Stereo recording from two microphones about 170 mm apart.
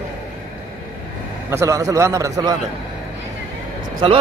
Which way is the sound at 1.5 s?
20° right (ahead or behind).